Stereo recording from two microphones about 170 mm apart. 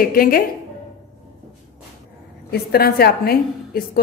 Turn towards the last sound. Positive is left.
turn(degrees=65)  # may be behind; listen again after turning